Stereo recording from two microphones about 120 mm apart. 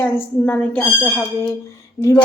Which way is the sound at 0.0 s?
10° left (ahead or behind).